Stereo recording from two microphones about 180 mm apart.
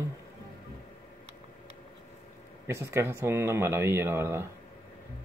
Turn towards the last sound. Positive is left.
turn(degrees=-10)  # may be behind; listen again after turning